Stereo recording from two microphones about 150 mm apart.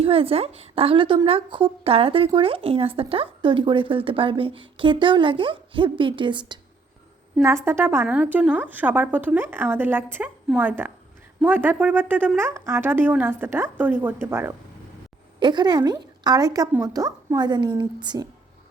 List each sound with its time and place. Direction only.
0.0 s a woman's voice: 40° right (ahead or behind)
7.4 s a woman's voice: 20° right (ahead or behind)
15.4 s a woman's voice: 30° right (ahead or behind)